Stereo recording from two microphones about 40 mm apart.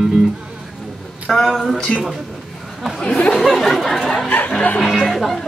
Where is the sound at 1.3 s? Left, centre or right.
Centre.